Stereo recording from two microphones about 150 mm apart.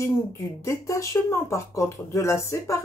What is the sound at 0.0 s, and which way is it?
Speech, 20° left (ahead or behind).